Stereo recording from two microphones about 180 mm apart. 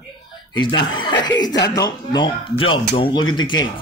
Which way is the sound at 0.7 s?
25° left (ahead or behind).